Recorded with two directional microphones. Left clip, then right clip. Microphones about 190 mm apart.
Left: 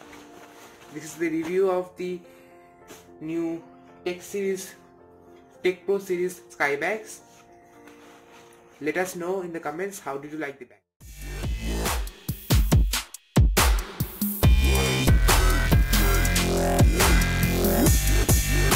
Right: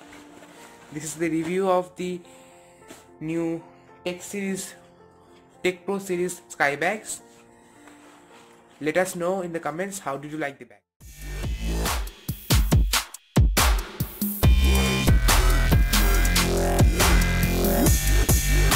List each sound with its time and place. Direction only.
0.9 s speech: 60° right (ahead or behind)
3.3 s speech: 70° right (ahead or behind)
5.6 s speech: 60° right (ahead or behind)
8.8 s speech: 50° right (ahead or behind)
11.1 s music: centre (ahead or behind)